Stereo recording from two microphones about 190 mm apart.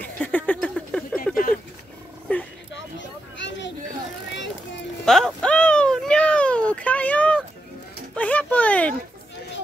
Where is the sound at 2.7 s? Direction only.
70° left (ahead or behind).